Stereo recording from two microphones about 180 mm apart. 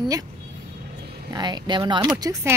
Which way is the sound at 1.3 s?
25° right (ahead or behind).